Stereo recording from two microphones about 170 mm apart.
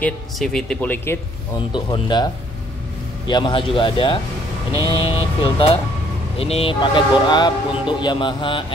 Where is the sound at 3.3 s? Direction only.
30° left (ahead or behind).